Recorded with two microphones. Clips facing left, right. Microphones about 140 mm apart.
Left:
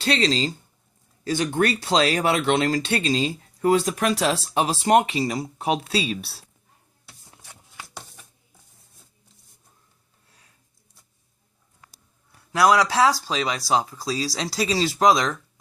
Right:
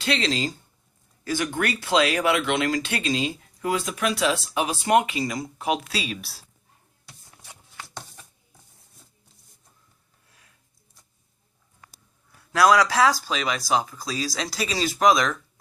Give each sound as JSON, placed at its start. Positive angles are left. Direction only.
{"t": 0.0, "sound": "speech", "side_deg": 35}
{"t": 7.8, "sound": "a sound", "side_deg": 10}
{"t": 12.5, "sound": "speech", "side_deg": 25}